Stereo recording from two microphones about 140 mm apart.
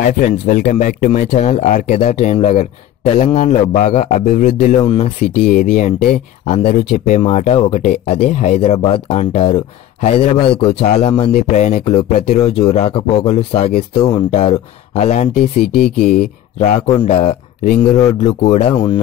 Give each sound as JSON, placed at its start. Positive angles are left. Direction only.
{"t": 0.0, "sound": "speech", "side_deg": 70}
{"t": 1.3, "sound": "a man's voice", "side_deg": 55}
{"t": 4.8, "sound": "speech", "side_deg": 45}
{"t": 5.8, "sound": "a man's voice", "side_deg": 65}
{"t": 6.6, "sound": "speech", "side_deg": 50}
{"t": 11.3, "sound": "speech", "side_deg": 60}
{"t": 15.0, "sound": "a man's voice", "side_deg": 55}
{"t": 15.7, "sound": "speech", "side_deg": 5}
{"t": 16.5, "sound": "speech", "side_deg": 60}